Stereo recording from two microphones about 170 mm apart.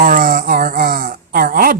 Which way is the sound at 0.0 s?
55° right (ahead or behind).